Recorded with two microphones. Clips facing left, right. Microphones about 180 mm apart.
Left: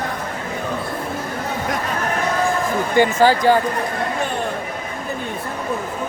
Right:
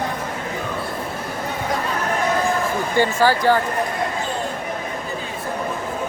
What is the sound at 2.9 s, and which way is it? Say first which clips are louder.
Speech: left 3 dB; 15° left (ahead or behind).